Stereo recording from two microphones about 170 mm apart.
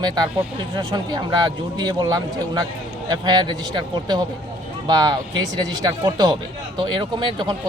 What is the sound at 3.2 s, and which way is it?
Speech, 25° right (ahead or behind).